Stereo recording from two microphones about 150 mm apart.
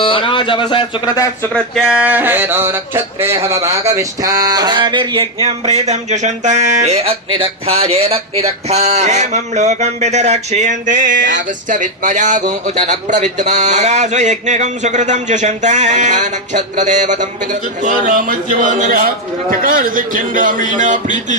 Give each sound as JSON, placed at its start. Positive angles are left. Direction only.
{"t": 0.0, "sound": "speech", "side_deg": 35}
{"t": 1.5, "sound": "a man's voice", "side_deg": 0}
{"t": 20.7, "sound": "music", "side_deg": -55}